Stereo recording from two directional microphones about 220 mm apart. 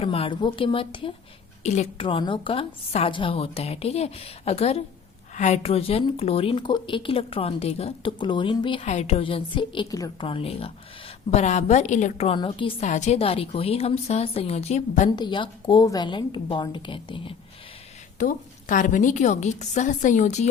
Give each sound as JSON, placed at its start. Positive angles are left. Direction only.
{"t": 0.0, "sound": "a woman's voice", "side_deg": 25}
{"t": 15.1, "sound": "a woman's voice", "side_deg": 20}
{"t": 18.2, "sound": "a woman's voice", "side_deg": 35}